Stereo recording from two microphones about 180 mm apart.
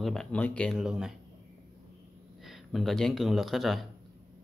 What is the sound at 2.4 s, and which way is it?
Speech, centre (ahead or behind).